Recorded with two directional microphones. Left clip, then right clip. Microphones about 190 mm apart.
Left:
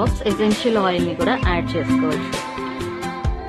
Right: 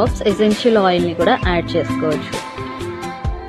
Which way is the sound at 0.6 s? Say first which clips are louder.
Right 5 dB; 20° right (ahead or behind).